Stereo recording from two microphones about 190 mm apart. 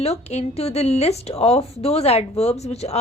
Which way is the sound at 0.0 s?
35° left (ahead or behind).